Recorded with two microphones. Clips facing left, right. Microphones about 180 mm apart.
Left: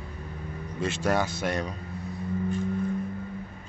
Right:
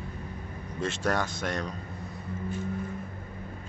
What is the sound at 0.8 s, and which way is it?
Speech, centre (ahead or behind).